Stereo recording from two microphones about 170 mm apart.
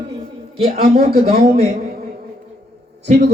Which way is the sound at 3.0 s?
75° right (ahead or behind).